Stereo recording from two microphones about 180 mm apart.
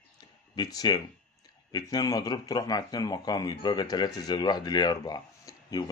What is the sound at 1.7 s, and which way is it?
Speech, 20° left (ahead or behind).